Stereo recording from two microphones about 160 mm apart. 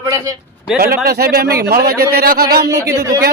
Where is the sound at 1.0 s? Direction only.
75° right (ahead or behind).